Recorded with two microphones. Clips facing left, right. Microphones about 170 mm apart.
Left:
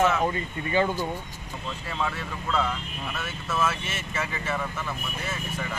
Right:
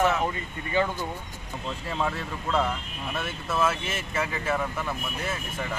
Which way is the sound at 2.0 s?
15° right (ahead or behind).